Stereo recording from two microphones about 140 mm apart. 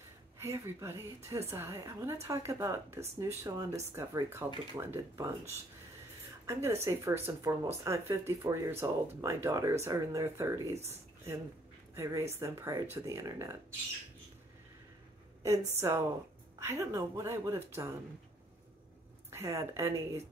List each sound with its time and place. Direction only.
0.4 s speech: 20° right (ahead or behind)
6.4 s speech: 20° right (ahead or behind)
11.9 s speech: 20° right (ahead or behind)
15.7 s speech: 20° right (ahead or behind)
19.3 s speech: 20° right (ahead or behind)